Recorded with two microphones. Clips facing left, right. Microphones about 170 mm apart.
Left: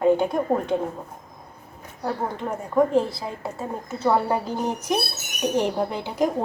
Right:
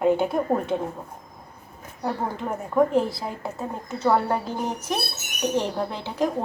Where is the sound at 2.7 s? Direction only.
Centre (ahead or behind).